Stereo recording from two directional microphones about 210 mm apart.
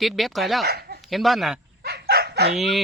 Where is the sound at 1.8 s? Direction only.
50° right (ahead or behind).